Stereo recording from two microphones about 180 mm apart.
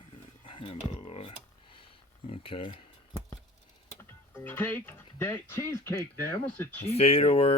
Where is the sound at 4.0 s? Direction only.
10° left (ahead or behind).